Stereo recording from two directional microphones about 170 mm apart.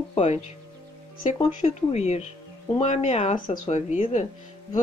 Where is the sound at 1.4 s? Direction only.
40° left (ahead or behind).